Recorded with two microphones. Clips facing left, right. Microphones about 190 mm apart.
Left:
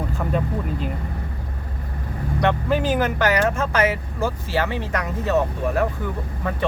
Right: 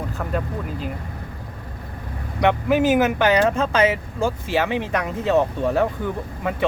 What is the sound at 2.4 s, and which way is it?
Speech, 15° right (ahead or behind).